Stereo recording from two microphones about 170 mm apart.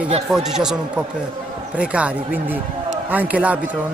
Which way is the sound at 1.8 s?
5° right (ahead or behind).